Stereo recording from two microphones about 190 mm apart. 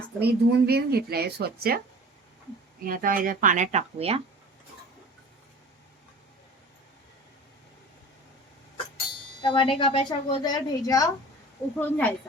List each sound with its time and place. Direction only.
0.2 s speech: 55° right (ahead or behind)
2.8 s speech: 45° right (ahead or behind)
9.4 s a woman's voice: 25° left (ahead or behind); by 12.1 s 10° left (ahead or behind)